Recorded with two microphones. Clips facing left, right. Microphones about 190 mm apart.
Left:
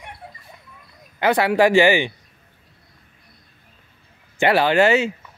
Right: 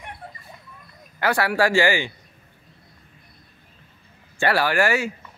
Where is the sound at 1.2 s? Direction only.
20° left (ahead or behind).